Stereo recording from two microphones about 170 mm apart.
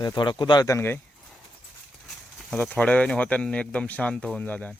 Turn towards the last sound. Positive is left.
turn(degrees=10)  # may be behind; listen again after turning